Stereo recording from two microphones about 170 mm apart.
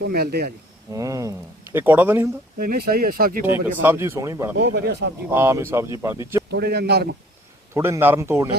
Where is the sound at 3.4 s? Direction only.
10° right (ahead or behind).